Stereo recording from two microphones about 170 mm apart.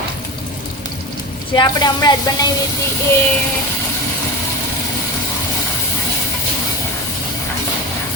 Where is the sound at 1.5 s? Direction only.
25° left (ahead or behind).